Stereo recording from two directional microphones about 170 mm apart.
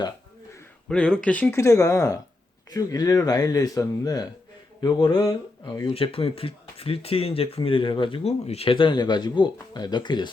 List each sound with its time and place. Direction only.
0.9 s speech: 5° left (ahead or behind); by 5.9 s 20° left (ahead or behind)
5.9 s speech: 35° left (ahead or behind)